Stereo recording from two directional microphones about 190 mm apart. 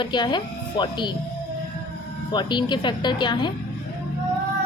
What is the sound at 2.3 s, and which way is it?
A child's voice, 25° left (ahead or behind).